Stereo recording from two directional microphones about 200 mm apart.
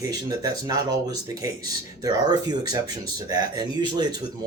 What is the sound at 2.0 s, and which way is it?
Speech, 20° right (ahead or behind).